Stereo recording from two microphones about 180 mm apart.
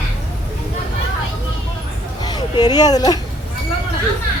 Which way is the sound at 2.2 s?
25° left (ahead or behind).